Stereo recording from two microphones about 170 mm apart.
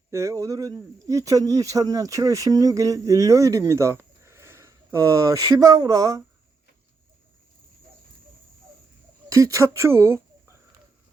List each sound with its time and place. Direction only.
0.1 s speech: 15° right (ahead or behind)
9.3 s speech: 20° right (ahead or behind)